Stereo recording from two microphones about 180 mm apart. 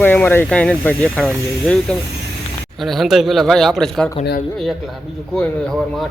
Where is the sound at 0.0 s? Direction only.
10° left (ahead or behind).